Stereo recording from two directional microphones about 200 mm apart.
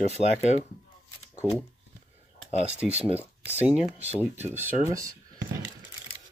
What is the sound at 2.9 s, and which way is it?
Speech, 30° right (ahead or behind).